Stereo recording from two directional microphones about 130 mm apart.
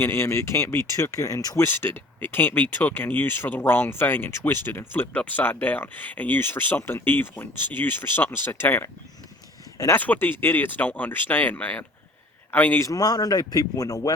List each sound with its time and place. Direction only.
0.0 s speech: 20° left (ahead or behind)
1.6 s speech: 15° left (ahead or behind)
10.0 s speech: 15° left (ahead or behind)
12.9 s speech: 30° left (ahead or behind)